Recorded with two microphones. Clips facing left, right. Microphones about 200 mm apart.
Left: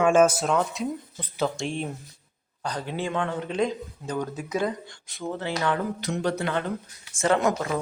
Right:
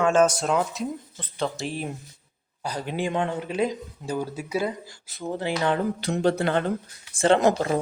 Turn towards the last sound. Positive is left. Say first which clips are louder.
# right 3 dB
turn(degrees=-35)  # may be behind; listen again after turning